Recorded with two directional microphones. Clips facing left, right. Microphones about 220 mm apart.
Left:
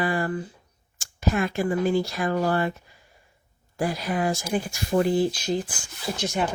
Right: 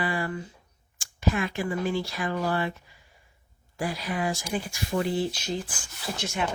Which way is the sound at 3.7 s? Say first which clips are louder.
Left 4 dB; 45° left (ahead or behind).